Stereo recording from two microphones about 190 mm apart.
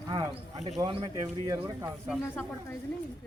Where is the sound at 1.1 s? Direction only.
15° right (ahead or behind).